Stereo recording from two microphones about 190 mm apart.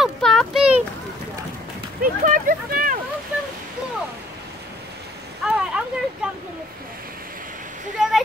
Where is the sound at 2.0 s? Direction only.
45° right (ahead or behind).